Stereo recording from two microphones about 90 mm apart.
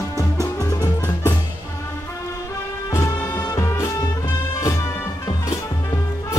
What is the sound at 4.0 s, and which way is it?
Music, 50° left (ahead or behind).